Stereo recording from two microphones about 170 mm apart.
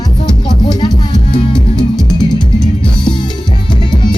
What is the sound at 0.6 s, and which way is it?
Music, 25° left (ahead or behind).